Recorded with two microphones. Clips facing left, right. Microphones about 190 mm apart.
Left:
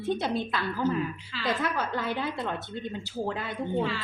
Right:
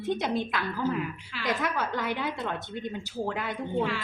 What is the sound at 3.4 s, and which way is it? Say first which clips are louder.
Speech: even; 15° right (ahead or behind).